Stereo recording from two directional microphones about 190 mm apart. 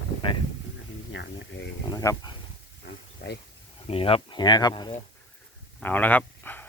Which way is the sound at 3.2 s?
60° left (ahead or behind).